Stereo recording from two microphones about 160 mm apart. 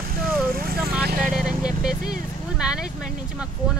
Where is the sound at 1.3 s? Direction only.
5° right (ahead or behind).